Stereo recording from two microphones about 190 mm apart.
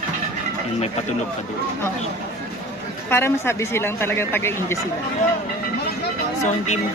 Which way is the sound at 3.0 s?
10° left (ahead or behind).